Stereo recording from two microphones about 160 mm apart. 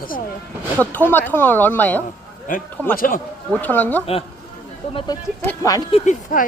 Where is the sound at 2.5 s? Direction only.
60° left (ahead or behind).